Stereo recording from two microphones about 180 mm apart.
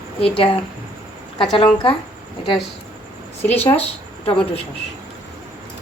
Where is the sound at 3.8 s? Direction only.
35° left (ahead or behind).